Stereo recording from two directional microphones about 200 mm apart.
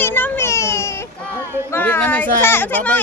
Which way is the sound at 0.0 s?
10° left (ahead or behind).